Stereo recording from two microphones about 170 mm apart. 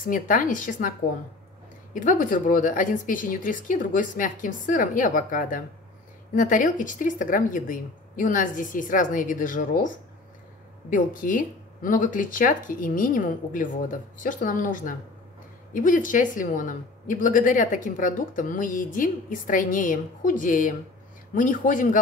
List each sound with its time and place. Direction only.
0.1 s a woman's voice: 50° left (ahead or behind)
2.0 s a woman's voice: 50° left (ahead or behind)
10.9 s a woman's voice: 50° left (ahead or behind)